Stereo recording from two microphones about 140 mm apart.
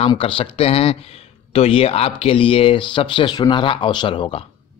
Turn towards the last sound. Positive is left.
turn(degrees=40)  # may be behind; listen again after turning